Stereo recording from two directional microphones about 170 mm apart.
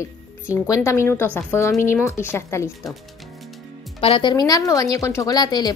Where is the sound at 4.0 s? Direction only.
30° left (ahead or behind).